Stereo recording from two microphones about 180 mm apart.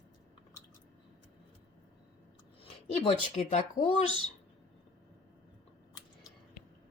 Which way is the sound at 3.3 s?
40° left (ahead or behind).